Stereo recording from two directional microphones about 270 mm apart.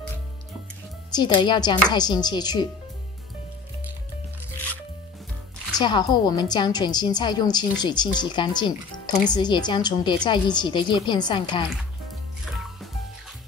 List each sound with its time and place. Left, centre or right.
1.1 s speech: centre
5.7 s speech: centre